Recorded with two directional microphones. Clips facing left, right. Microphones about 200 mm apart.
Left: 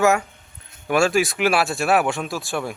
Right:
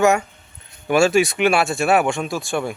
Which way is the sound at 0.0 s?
Centre (ahead or behind).